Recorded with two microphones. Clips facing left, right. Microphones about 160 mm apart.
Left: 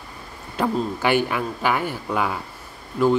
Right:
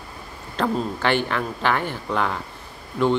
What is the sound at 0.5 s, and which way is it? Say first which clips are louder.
Speech: left 1 dB; 10° left (ahead or behind).